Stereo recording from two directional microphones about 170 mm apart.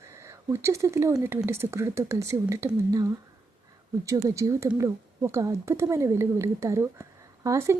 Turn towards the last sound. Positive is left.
turn(degrees=-15)  # may be behind; listen again after turning